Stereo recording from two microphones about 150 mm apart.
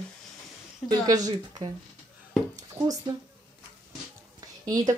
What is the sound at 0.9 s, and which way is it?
Speech, 25° right (ahead or behind).